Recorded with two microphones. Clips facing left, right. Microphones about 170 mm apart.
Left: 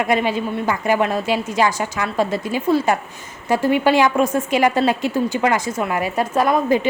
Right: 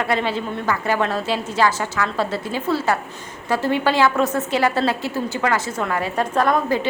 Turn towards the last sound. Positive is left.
turn(degrees=15)  # may be behind; listen again after turning